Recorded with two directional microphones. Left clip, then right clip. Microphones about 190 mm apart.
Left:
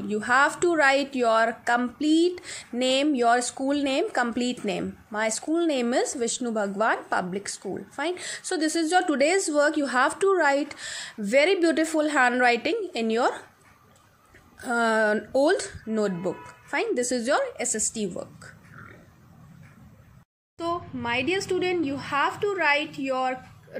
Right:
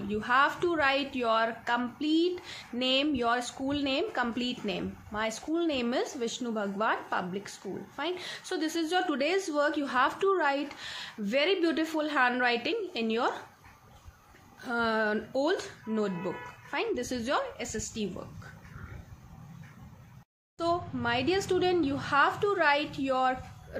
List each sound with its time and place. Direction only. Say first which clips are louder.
0.1 s a woman's voice: left 4 dB; 35° left (ahead or behind)
14.6 s a woman's voice: left 6 dB; 40° left (ahead or behind)
20.5 s speech: even; 5° right (ahead or behind)